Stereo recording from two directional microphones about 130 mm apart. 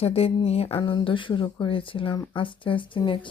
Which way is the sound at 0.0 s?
50° left (ahead or behind).